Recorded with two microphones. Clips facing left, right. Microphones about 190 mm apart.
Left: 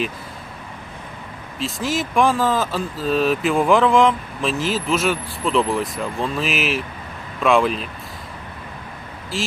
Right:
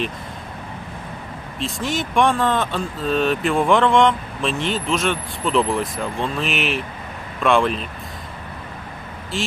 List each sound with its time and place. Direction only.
1.5 s speech: centre (ahead or behind)
9.3 s speech: centre (ahead or behind)